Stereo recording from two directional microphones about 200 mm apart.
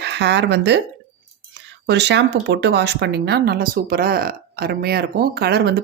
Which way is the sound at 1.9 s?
60° right (ahead or behind).